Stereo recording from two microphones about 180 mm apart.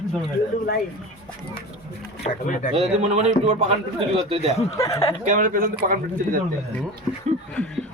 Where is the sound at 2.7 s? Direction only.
35° right (ahead or behind).